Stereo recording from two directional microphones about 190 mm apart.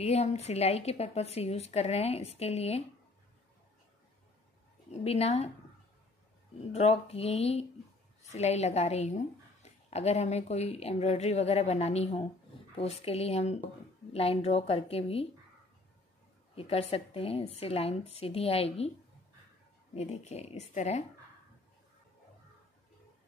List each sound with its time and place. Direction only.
0.0 s a woman's voice: 35° left (ahead or behind)
5.0 s a woman's voice: 30° left (ahead or behind)
6.7 s a woman's voice: 35° left (ahead or behind)
16.5 s a woman's voice: 30° left (ahead or behind)
20.0 s a woman's voice: 35° left (ahead or behind)